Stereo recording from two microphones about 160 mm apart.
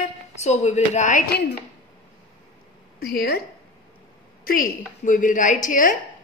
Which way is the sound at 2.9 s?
75° left (ahead or behind).